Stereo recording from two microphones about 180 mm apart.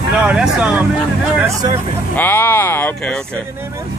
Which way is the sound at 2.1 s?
10° left (ahead or behind).